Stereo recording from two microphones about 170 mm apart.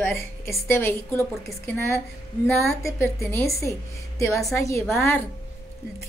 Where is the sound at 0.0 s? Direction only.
15° left (ahead or behind).